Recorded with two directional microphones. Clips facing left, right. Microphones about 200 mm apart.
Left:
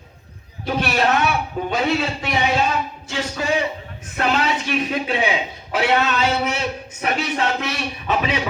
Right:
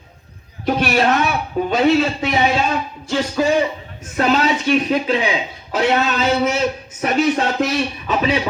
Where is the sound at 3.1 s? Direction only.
40° right (ahead or behind).